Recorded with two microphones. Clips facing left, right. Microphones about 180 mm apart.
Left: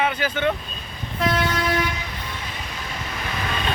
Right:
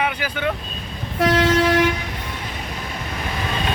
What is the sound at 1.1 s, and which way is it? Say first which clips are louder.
Vehicle: right 6 dB; 85° right.